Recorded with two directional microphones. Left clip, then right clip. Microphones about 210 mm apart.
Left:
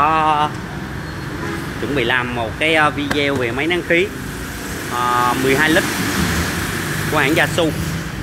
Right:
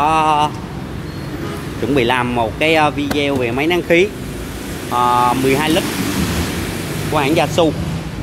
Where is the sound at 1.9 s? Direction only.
25° right (ahead or behind).